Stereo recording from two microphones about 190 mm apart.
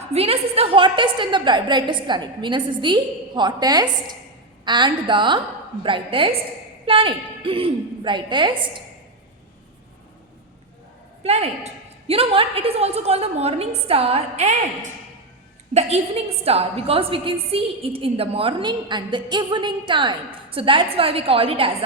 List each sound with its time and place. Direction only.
0.1 s a woman's voice: 30° right (ahead or behind)
11.2 s a woman's voice: 30° right (ahead or behind)